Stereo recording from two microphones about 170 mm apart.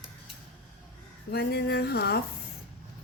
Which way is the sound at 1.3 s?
70° left (ahead or behind).